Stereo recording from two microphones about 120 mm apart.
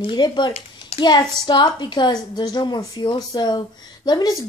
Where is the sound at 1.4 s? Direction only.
40° left (ahead or behind).